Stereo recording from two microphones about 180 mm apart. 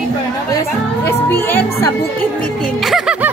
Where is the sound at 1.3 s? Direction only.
10° left (ahead or behind).